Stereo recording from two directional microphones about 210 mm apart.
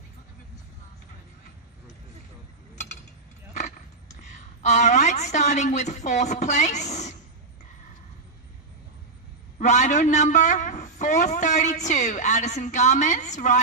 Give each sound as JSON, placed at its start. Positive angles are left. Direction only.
{"t": 3.5, "sound": "a woman's voice", "side_deg": 35}
{"t": 9.6, "sound": "a man's voice", "side_deg": 35}